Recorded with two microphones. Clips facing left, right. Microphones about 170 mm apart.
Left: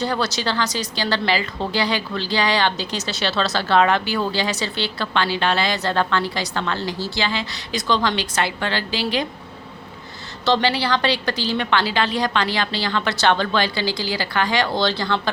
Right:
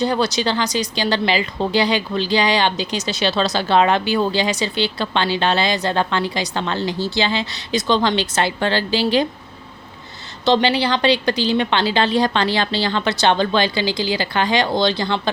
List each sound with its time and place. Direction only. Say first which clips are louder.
0.0 s a woman's voice: right 4 dB; 15° right (ahead or behind)
10.4 s a woman's voice: right 3 dB; 20° right (ahead or behind)